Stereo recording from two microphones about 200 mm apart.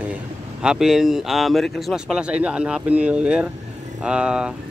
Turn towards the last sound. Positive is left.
turn(degrees=-5)  # may be behind; listen again after turning